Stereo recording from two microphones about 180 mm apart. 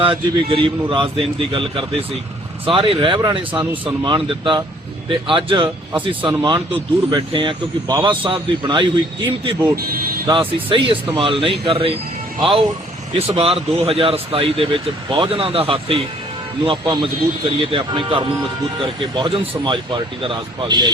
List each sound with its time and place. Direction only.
0.0 s a man's voice: 30° right (ahead or behind)